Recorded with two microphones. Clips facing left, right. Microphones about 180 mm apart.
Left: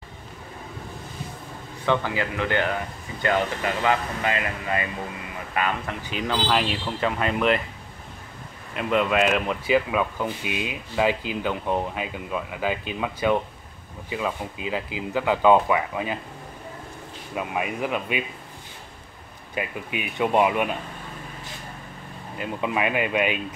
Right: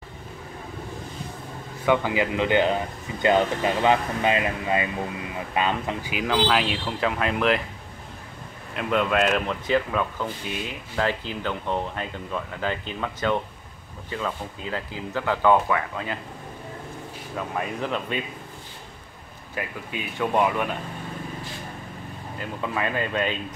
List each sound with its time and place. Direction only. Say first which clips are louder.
1.9 s speech: right 2 dB; 15° right (ahead or behind)
6.0 s speech: right 2 dB; 5° right (ahead or behind)
8.7 s speech: left 1 dB; centre (ahead or behind)
17.4 s speech: left 2 dB; 10° left (ahead or behind)
19.5 s speech: left 3 dB; 20° left (ahead or behind)
22.4 s speech: left 3 dB; 15° left (ahead or behind)